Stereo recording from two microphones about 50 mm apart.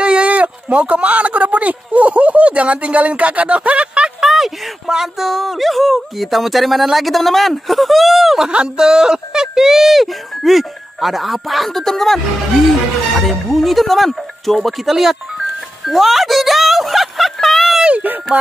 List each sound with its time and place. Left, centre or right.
0.0 s speech: right
4.2 s speech: centre
8.5 s speech: centre
13.3 s speech: centre
18.3 s music: right